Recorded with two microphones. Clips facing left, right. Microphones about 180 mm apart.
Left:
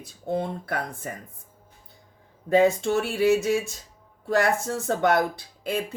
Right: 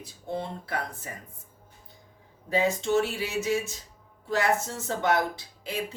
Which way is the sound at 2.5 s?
55° left (ahead or behind).